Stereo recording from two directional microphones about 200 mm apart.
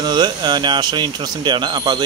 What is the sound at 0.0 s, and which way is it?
Speech, 20° right (ahead or behind).